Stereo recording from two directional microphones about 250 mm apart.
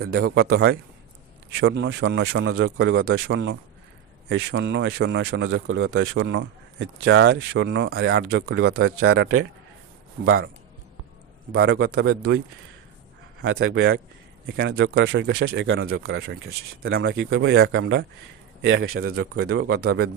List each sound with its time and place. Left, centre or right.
0.0 s speech: right
2.6 s speech: right
11.5 s speech: right
13.4 s a man's voice: right
16.1 s a man's voice: right
19.4 s speech: right